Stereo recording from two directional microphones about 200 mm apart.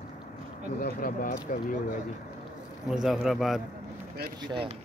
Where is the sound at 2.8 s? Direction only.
Centre (ahead or behind).